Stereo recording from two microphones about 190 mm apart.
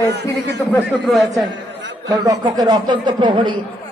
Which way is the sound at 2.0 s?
20° right (ahead or behind).